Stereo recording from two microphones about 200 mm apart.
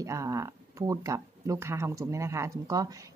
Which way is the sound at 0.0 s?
15° right (ahead or behind).